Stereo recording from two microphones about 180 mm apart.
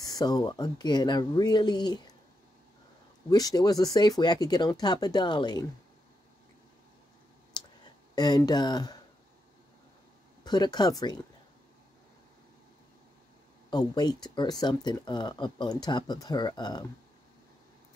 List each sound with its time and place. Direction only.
0.0 s speech: 20° left (ahead or behind)
3.3 s speech: 20° left (ahead or behind)
7.5 s clicking: 25° left (ahead or behind)
8.1 s speech: 20° left (ahead or behind)
10.4 s speech: 25° left (ahead or behind)
13.7 s speech: 25° left (ahead or behind)